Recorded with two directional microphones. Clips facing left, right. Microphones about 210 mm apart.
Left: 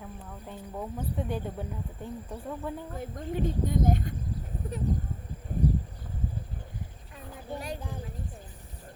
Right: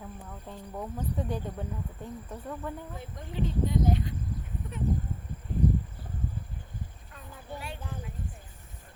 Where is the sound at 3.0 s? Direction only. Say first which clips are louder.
Left 4 dB; 50° left (ahead or behind).